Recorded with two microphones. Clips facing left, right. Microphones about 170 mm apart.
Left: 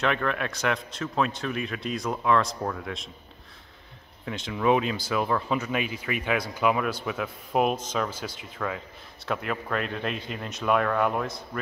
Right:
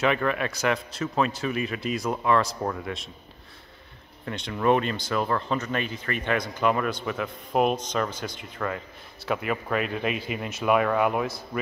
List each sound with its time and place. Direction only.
0.0 s speech: 5° right (ahead or behind)
4.3 s speech: centre (ahead or behind)